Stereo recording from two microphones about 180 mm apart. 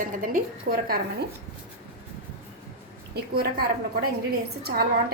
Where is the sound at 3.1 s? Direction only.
60° right (ahead or behind).